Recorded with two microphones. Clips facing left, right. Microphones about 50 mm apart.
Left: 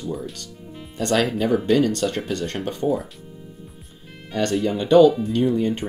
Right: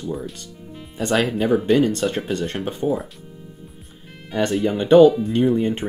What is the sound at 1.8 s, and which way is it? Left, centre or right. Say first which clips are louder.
Speech: right 1 dB; right.